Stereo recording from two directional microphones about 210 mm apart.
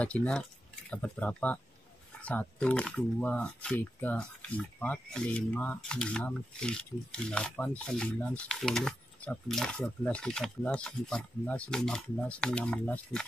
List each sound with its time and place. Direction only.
0.0 s speech: 5° left (ahead or behind)